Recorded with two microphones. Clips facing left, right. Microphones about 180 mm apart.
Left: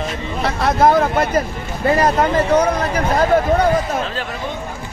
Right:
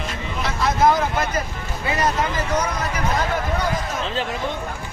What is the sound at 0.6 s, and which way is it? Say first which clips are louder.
Vehicle: left 4 dB; 60° left (ahead or behind).